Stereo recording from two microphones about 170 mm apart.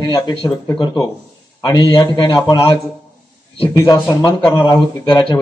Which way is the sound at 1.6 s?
25° left (ahead or behind).